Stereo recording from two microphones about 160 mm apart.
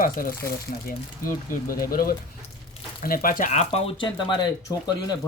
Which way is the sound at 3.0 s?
65° left (ahead or behind).